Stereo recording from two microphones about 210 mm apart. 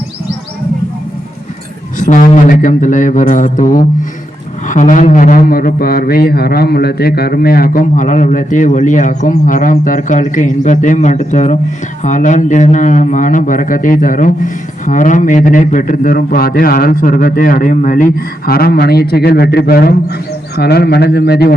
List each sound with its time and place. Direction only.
2.0 s a man's voice: 40° left (ahead or behind)